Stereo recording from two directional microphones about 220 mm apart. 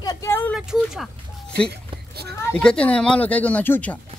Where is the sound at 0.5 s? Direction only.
Centre (ahead or behind).